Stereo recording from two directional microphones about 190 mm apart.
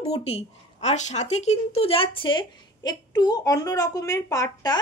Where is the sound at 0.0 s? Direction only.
30° left (ahead or behind).